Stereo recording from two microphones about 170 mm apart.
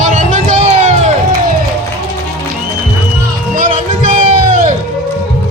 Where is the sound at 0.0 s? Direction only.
45° right (ahead or behind).